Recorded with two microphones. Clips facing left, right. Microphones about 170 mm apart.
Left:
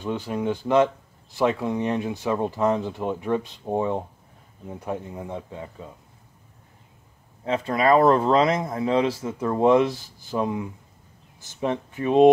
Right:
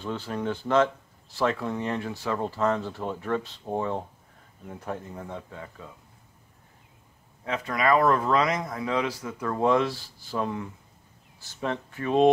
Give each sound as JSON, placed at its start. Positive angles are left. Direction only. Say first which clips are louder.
{"t": 0.0, "sound": "speech", "louder": "left 4 dB", "side_deg": 15}
{"t": 7.4, "sound": "speech", "louder": "left 4 dB", "side_deg": 30}